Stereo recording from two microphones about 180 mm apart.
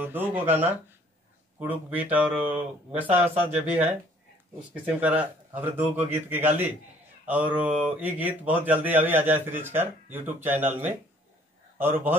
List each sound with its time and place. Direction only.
0.0 s speech: 10° right (ahead or behind)